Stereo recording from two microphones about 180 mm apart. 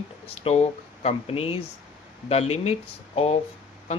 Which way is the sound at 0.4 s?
30° left (ahead or behind).